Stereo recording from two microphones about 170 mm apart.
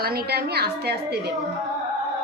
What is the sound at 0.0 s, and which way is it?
A woman's voice, 65° right (ahead or behind).